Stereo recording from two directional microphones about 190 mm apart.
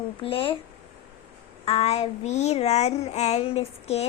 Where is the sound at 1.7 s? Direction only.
35° left (ahead or behind).